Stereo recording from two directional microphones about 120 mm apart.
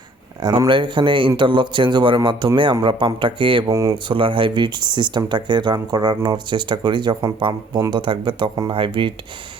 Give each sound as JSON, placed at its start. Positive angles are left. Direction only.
{"t": 0.7, "sound": "speech", "side_deg": -45}
{"t": 3.7, "sound": "speech", "side_deg": -25}
{"t": 4.1, "sound": "speech", "side_deg": -45}